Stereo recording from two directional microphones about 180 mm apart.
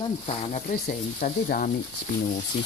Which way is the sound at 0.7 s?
55° left (ahead or behind).